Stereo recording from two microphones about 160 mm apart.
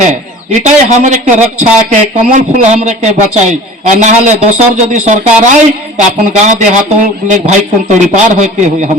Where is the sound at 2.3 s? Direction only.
50° right (ahead or behind).